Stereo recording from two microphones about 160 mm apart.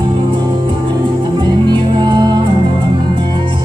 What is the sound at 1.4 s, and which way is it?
Music, 30° right (ahead or behind).